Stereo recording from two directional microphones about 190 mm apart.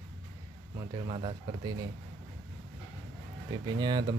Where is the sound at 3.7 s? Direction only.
20° right (ahead or behind).